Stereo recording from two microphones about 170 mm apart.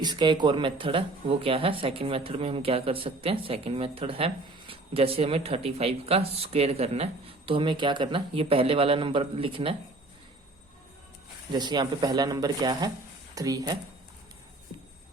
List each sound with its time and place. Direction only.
0.0 s speech: 25° right (ahead or behind)
11.5 s speech: 25° right (ahead or behind)